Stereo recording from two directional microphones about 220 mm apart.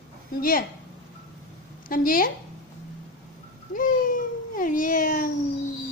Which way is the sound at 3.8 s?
40° left (ahead or behind).